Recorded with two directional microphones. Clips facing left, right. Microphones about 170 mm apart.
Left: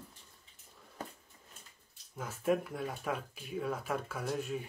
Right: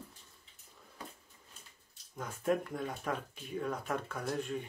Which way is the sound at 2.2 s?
5° left (ahead or behind).